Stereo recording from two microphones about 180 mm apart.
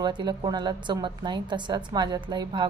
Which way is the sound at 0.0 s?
25° right (ahead or behind).